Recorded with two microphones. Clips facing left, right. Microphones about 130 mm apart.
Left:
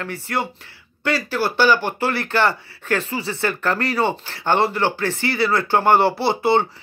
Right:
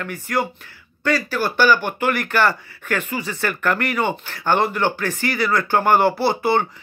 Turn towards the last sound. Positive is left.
turn(degrees=25)  # may be behind; listen again after turning